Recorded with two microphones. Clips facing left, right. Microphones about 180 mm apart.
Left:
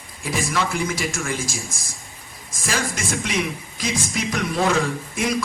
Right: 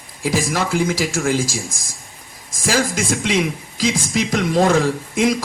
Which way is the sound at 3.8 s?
90° right.